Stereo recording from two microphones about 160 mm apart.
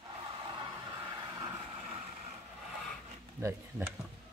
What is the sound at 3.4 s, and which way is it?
Speech, 10° right (ahead or behind).